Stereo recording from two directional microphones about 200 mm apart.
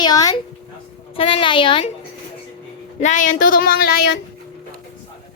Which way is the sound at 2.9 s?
40° left (ahead or behind).